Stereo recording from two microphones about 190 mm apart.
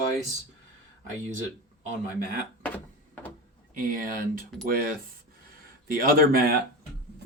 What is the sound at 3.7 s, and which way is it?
Speech, 50° right (ahead or behind).